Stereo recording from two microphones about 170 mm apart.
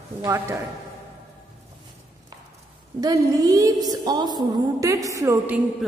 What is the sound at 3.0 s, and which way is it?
A woman's voice, 20° right (ahead or behind).